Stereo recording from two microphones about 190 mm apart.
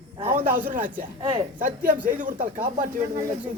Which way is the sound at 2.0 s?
45° right (ahead or behind).